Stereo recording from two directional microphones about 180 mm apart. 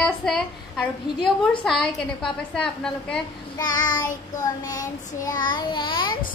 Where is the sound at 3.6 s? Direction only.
20° left (ahead or behind).